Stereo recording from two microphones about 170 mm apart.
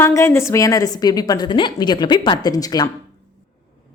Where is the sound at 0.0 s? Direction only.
15° left (ahead or behind).